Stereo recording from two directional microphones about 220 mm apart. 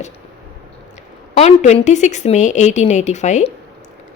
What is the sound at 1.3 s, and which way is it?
A woman's voice, 30° left (ahead or behind).